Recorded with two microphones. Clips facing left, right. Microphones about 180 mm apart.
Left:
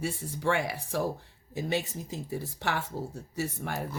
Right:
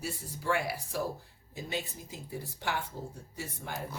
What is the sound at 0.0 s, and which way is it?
Speech, 75° left (ahead or behind).